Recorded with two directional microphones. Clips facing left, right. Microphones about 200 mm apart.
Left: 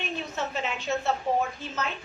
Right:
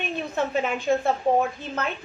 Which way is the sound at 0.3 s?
50° right (ahead or behind).